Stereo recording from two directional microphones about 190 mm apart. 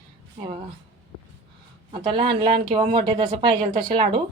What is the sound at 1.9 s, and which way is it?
A woman's voice, 25° right (ahead or behind).